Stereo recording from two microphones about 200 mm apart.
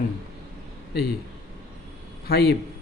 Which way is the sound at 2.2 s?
55° left (ahead or behind).